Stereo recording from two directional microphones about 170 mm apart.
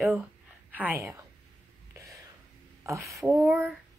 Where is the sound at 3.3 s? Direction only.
Centre (ahead or behind).